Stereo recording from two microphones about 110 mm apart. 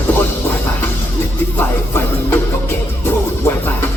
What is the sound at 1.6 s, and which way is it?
Music, 20° left (ahead or behind).